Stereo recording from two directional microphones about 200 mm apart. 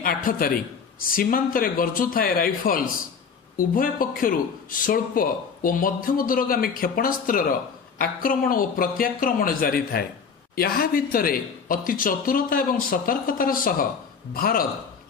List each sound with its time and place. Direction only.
0.0 s a man's voice: 45° left (ahead or behind)